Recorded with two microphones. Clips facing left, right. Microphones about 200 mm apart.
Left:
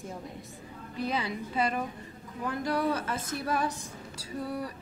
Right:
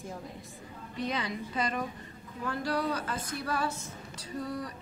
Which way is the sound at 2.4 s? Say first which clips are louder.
Left 2 dB; 25° left (ahead or behind).